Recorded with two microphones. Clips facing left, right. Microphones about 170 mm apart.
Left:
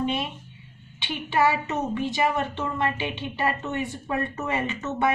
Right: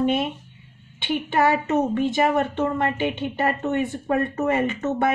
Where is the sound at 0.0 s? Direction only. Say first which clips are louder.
Right 5 dB; 50° right (ahead or behind).